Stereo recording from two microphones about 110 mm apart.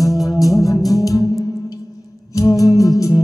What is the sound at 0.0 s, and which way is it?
Music, 30° left (ahead or behind).